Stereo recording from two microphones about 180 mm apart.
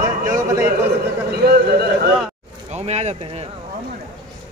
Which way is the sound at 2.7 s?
35° right (ahead or behind).